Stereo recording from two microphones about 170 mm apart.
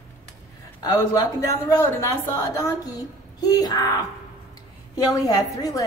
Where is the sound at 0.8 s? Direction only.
20° left (ahead or behind).